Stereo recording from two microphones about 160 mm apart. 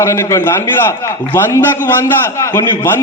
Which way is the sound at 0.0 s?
15° left (ahead or behind).